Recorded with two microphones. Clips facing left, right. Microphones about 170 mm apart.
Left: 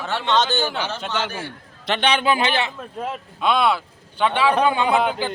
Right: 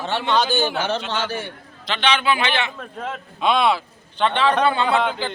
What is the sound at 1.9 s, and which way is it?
Speech, 45° left (ahead or behind).